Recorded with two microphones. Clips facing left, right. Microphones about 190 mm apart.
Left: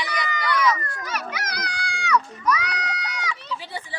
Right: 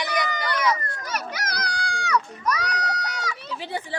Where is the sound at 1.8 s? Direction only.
45° right (ahead or behind).